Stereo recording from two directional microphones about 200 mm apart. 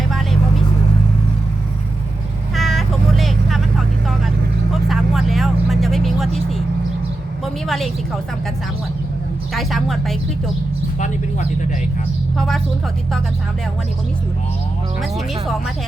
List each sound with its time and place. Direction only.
0.1 s vehicle: centre (ahead or behind)
2.6 s vehicle: centre (ahead or behind)
7.4 s a sound: centre (ahead or behind)
9.6 s a woman's voice: centre (ahead or behind)
12.4 s a woman's voice: centre (ahead or behind)
15.1 s a woman's voice: centre (ahead or behind)